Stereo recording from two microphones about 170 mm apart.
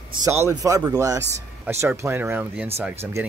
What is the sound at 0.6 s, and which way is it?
Speech, 20° right (ahead or behind).